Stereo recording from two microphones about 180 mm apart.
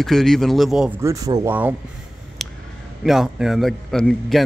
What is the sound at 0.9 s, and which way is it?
Speech, 15° right (ahead or behind).